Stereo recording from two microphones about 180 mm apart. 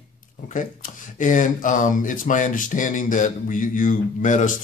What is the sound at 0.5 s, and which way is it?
Speech, 45° left (ahead or behind).